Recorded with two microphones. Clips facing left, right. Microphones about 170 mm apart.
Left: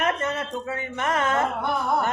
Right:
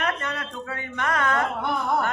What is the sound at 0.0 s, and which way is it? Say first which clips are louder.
A woman's voice: left 3 dB; 20° left (ahead or behind).